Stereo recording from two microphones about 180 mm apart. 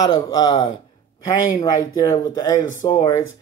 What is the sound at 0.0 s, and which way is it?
Speech, 20° left (ahead or behind).